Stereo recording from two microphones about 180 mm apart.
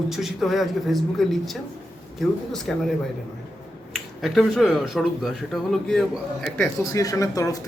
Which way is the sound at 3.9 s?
Centre (ahead or behind).